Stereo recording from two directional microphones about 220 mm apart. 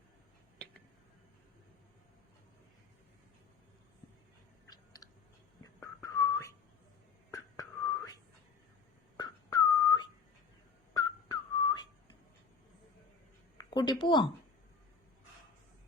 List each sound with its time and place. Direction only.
5.8 s whistling: 15° left (ahead or behind)
9.1 s whistling: 20° left (ahead or behind)
13.6 s a sound: 20° left (ahead or behind)
14.0 s speech: 20° left (ahead or behind)